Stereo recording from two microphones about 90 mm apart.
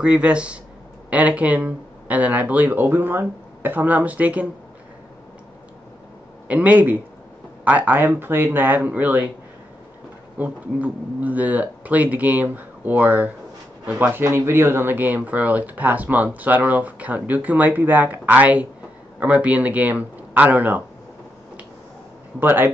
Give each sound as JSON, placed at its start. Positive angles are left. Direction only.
{"t": 0.0, "sound": "speech", "side_deg": -10}
{"t": 6.4, "sound": "speech", "side_deg": -15}
{"t": 10.3, "sound": "speech", "side_deg": -20}
{"t": 22.4, "sound": "speech", "side_deg": -20}